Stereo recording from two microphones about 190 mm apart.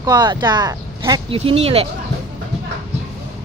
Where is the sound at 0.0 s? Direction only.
20° right (ahead or behind).